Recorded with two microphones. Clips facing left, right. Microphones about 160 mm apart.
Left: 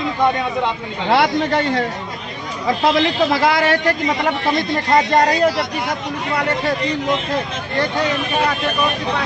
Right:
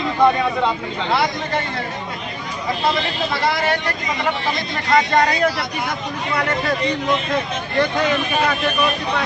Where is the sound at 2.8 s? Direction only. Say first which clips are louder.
Left 6 dB; 90° left.